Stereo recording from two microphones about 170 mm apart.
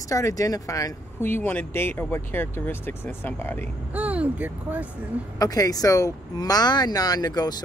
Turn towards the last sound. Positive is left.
turn(degrees=25)  # may be behind; listen again after turning